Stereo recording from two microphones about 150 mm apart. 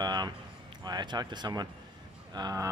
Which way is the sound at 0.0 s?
30° right (ahead or behind).